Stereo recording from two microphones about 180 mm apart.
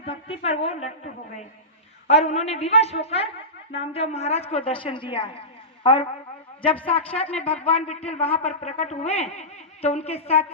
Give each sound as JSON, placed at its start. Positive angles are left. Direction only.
{"t": 0.0, "sound": "speech", "side_deg": 30}
{"t": 6.8, "sound": "speech", "side_deg": 30}